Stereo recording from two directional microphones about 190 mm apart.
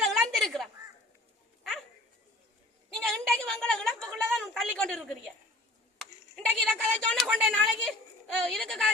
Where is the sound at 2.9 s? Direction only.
Centre (ahead or behind).